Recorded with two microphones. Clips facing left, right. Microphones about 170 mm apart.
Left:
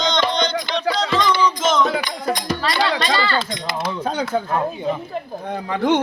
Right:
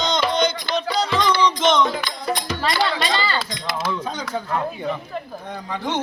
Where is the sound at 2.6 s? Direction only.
10° right (ahead or behind).